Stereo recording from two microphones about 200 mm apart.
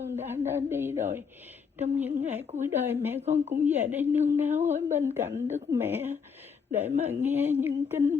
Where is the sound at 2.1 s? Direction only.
35° right (ahead or behind).